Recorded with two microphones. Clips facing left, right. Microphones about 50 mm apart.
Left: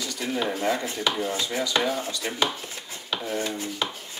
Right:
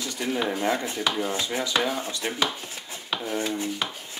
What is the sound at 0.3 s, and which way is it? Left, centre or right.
Speech, centre.